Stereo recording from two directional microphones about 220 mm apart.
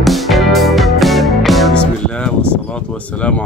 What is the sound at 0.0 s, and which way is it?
Music, centre (ahead or behind).